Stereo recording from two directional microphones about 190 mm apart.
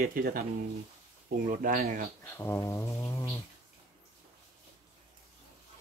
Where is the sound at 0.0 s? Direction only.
50° right (ahead or behind).